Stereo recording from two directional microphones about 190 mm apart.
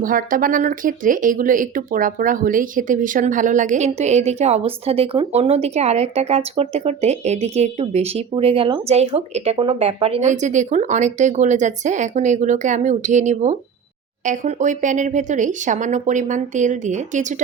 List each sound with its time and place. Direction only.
0.0 s speech: 45° right (ahead or behind)